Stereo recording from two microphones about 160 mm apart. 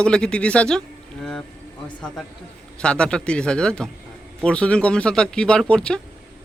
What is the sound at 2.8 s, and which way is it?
A man's voice, 5° left (ahead or behind).